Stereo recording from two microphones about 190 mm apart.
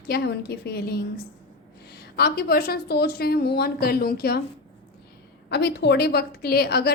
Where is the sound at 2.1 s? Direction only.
55° left (ahead or behind).